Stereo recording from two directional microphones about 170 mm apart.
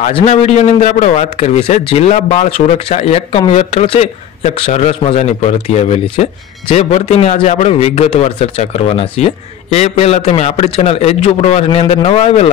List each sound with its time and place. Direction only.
0.0 s a man's voice: 40° left (ahead or behind)